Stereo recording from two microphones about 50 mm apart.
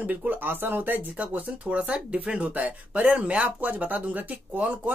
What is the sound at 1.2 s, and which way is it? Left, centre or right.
Speech, right.